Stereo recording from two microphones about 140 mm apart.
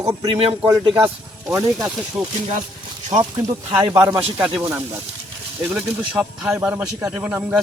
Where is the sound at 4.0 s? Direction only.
20° right (ahead or behind).